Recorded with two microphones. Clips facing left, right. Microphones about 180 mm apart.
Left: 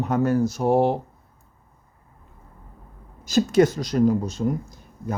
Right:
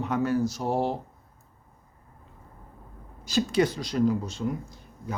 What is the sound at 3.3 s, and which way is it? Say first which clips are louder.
Speech: left 6 dB; 45° left (ahead or behind).